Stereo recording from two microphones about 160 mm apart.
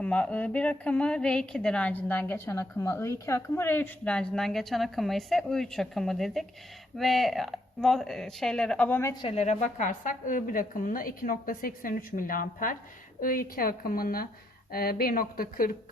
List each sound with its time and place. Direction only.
0.0 s a woman's voice: 10° left (ahead or behind)
9.2 s a woman's voice: 40° left (ahead or behind); by 15.7 s 65° left (ahead or behind)